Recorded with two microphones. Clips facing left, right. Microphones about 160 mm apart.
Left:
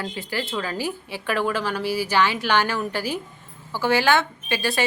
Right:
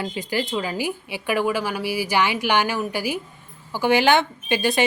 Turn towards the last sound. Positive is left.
turn(degrees=-20)  # may be behind; listen again after turning